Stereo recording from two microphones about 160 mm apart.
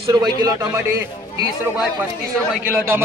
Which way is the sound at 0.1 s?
25° right (ahead or behind).